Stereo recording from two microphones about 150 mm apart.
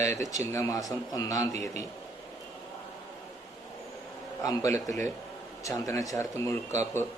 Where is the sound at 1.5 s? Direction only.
50° right (ahead or behind).